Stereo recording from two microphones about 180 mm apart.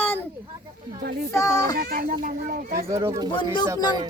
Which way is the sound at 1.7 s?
60° right (ahead or behind).